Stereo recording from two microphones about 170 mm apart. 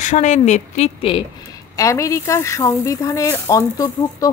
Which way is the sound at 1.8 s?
20° left (ahead or behind).